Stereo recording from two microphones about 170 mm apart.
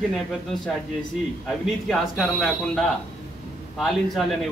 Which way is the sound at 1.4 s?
Centre (ahead or behind).